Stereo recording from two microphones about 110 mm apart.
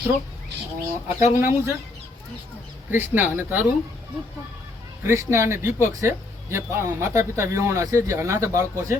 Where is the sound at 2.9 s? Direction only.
20° right (ahead or behind).